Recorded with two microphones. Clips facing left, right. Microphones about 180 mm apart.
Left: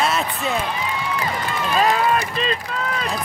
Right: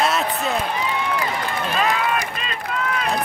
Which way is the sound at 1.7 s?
35° left (ahead or behind).